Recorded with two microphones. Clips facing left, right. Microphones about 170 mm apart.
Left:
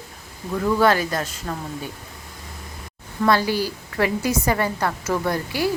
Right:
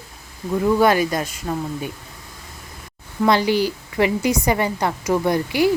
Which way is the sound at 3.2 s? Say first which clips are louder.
Right 3 dB; 20° right (ahead or behind).